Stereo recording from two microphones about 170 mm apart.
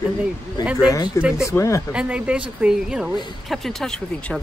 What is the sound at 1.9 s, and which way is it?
Speech, 5° right (ahead or behind).